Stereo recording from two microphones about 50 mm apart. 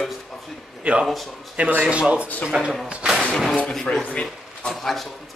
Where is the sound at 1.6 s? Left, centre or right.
Right.